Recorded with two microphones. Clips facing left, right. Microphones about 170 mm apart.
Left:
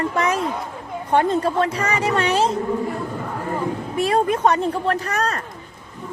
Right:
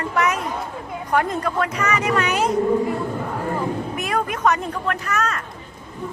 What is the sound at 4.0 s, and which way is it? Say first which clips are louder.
Speech: left 6 dB; 30° left (ahead or behind).